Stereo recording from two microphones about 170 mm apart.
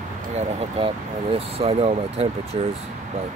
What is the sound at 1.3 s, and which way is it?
Speech, 35° right (ahead or behind).